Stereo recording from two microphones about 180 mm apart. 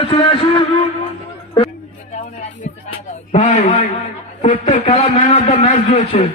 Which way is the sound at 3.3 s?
40° left (ahead or behind).